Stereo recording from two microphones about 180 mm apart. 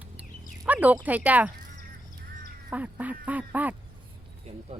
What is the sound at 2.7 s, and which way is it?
Speech, 10° right (ahead or behind).